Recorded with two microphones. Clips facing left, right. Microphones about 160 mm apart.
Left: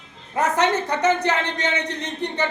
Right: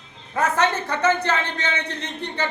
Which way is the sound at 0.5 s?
15° left (ahead or behind).